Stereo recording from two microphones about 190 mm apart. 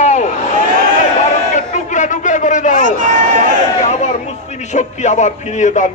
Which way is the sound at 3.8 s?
40° left (ahead or behind).